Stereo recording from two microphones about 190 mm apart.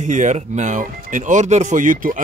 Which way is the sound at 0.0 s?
40° right (ahead or behind).